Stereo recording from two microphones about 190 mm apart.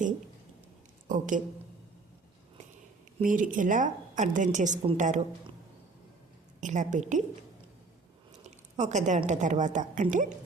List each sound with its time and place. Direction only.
1.0 s a woman's voice: 45° right (ahead or behind)
3.2 s a woman's voice: 45° right (ahead or behind)
6.6 s a woman's voice: 40° right (ahead or behind)
8.4 s a woman's voice: 35° right (ahead or behind)